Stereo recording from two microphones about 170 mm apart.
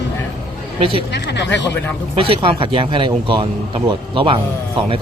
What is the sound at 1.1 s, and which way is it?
Speech, 90° left.